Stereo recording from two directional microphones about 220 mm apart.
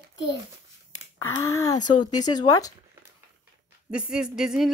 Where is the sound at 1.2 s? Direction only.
15° left (ahead or behind).